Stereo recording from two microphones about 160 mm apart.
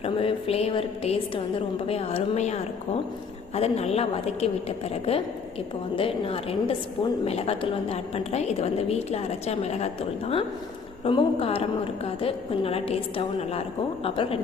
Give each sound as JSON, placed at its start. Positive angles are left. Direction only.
{"t": 0.0, "sound": "a woman's voice", "side_deg": 35}
{"t": 6.0, "sound": "a woman's voice", "side_deg": 35}